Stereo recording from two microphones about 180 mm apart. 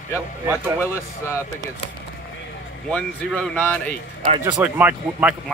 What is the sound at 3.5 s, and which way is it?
Speech, 10° left (ahead or behind).